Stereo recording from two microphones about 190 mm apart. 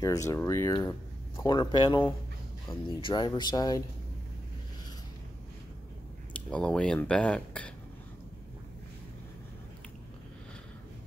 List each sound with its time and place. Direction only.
0.0 s speech: 15° left (ahead or behind)
3.0 s speech: 25° left (ahead or behind)
6.3 s speech: 5° left (ahead or behind)